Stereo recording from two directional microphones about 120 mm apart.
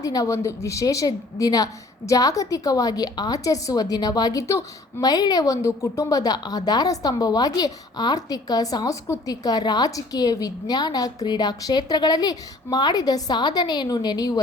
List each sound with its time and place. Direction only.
0.0 s a woman's voice: 30° left (ahead or behind)